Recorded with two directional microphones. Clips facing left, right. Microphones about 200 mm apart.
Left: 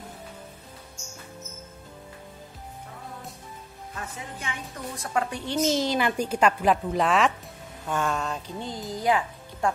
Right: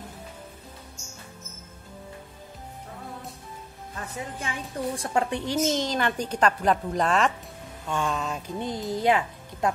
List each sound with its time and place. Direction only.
4.4 s a woman's voice: 35° right (ahead or behind)
5.6 s a woman's voice: 5° left (ahead or behind)
8.5 s a woman's voice: 20° right (ahead or behind)